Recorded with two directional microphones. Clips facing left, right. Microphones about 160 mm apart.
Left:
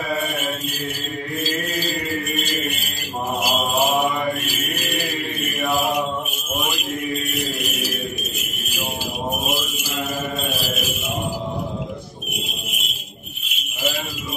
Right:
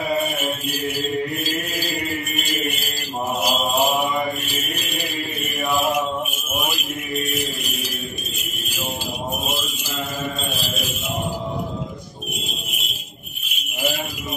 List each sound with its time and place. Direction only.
0.4 s mantra: 10° right (ahead or behind)
1.4 s chant: 10° right (ahead or behind)
3.3 s mantra: centre (ahead or behind)
7.2 s jingle bell: centre (ahead or behind)